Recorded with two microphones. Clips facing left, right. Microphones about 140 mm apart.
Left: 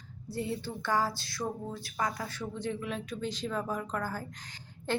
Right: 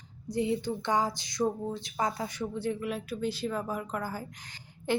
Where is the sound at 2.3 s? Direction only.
10° right (ahead or behind).